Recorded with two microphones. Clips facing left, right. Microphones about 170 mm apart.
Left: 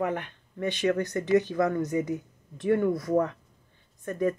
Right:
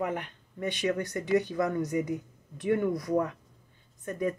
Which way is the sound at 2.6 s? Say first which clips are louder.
Left 3 dB; 15° right (ahead or behind).